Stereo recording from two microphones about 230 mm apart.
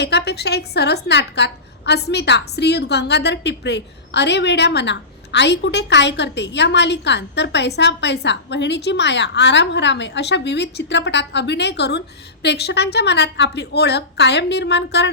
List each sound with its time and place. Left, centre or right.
0.0 s a woman's voice: left